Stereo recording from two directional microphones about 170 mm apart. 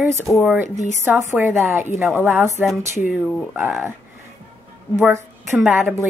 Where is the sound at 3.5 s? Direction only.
10° right (ahead or behind).